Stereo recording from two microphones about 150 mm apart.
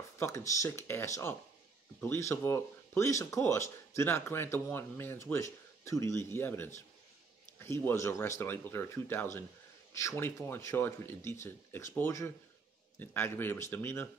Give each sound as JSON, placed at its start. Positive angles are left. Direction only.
{"t": 0.2, "sound": "speech", "side_deg": 20}